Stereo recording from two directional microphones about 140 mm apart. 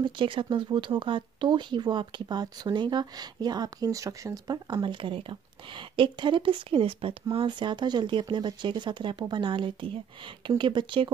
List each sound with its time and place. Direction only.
0.0 s speech: 35° right (ahead or behind)